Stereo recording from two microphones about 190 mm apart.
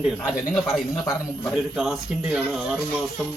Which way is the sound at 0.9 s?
20° left (ahead or behind).